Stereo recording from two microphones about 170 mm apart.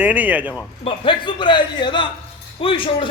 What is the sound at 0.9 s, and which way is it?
A man's voice, 30° left (ahead or behind).